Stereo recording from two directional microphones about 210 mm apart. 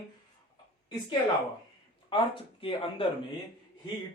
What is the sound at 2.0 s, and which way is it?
Speech, 25° left (ahead or behind).